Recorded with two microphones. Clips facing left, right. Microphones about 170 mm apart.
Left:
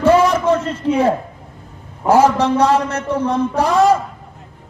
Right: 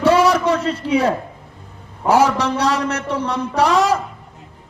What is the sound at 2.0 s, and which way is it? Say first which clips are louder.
A man's voice: left 3 dB; 75° right (ahead or behind).